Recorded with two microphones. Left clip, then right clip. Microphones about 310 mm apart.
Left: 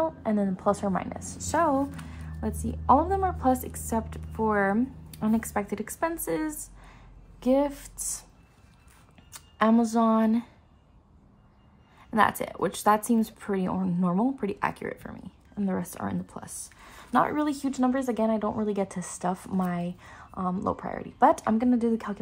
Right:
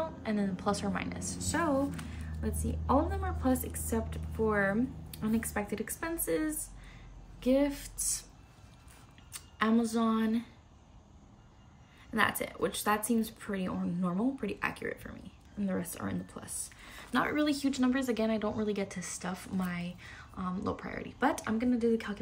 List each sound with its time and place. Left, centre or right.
0.2 s a woman's voice: centre
1.2 s a woman's voice: centre
1.5 s a woman's voice: centre
9.3 s speech: centre
12.1 s a woman's voice: centre